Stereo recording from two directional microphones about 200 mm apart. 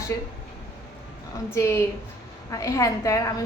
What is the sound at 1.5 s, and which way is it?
A woman's voice, 15° left (ahead or behind).